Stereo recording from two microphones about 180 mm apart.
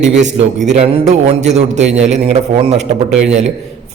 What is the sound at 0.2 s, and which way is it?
A man's voice, 40° right (ahead or behind).